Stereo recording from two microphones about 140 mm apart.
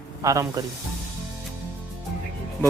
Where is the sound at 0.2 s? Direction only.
25° right (ahead or behind).